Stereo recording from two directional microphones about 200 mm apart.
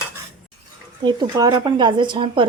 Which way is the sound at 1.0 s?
20° right (ahead or behind).